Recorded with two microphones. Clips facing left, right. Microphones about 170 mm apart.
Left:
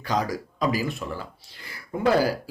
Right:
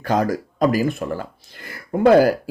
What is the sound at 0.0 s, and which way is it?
Speech, 50° right (ahead or behind).